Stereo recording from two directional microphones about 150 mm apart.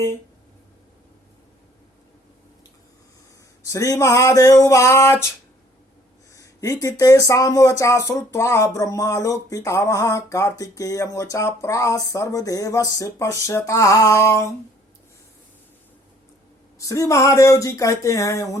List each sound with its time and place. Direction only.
3.7 s speech: 20° left (ahead or behind)
6.3 s a sound: 20° left (ahead or behind)
6.8 s speech: 20° left (ahead or behind)
16.7 s speech: 20° left (ahead or behind)